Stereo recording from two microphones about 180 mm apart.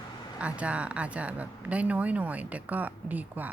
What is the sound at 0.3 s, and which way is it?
A woman's voice, 5° right (ahead or behind).